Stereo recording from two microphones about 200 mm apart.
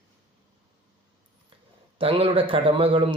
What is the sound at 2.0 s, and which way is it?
Speech, 25° right (ahead or behind).